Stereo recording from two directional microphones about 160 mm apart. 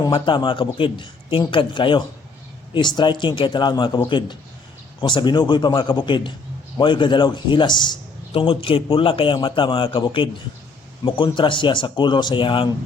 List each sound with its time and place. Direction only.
0.0 s a man's voice: 30° left (ahead or behind)